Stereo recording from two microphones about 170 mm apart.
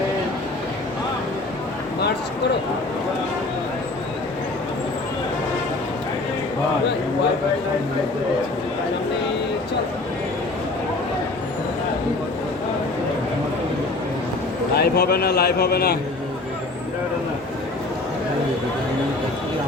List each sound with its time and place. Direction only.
14.8 s a man's voice: 65° left (ahead or behind)